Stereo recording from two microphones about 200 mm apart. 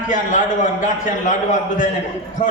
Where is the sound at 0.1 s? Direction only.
40° left (ahead or behind).